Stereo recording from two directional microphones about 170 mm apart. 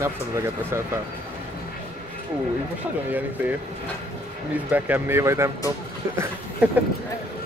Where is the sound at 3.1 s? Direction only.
10° right (ahead or behind).